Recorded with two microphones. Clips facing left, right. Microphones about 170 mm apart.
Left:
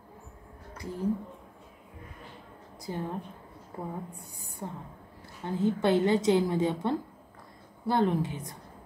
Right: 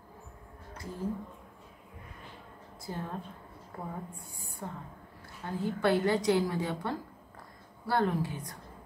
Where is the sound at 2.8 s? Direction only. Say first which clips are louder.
Left 4 dB; 20° left (ahead or behind).